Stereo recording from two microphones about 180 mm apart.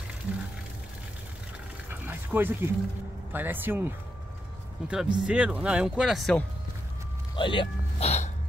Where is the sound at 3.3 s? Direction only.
10° right (ahead or behind).